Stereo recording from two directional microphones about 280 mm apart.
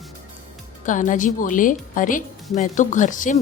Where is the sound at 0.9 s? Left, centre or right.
Left.